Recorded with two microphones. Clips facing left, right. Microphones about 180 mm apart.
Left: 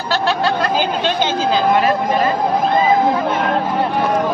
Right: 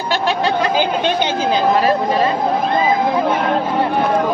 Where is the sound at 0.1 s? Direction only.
15° right (ahead or behind).